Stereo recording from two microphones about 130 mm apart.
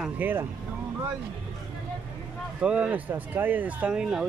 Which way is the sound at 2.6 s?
10° right (ahead or behind).